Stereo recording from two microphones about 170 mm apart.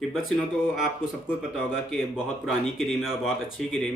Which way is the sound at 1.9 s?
Centre (ahead or behind).